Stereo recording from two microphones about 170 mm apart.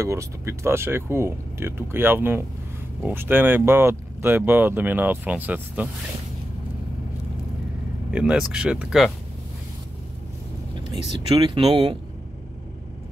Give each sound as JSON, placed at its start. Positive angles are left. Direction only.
{"t": 0.0, "sound": "speech", "side_deg": -15}
{"t": 8.1, "sound": "speech", "side_deg": -5}
{"t": 11.2, "sound": "speech", "side_deg": -25}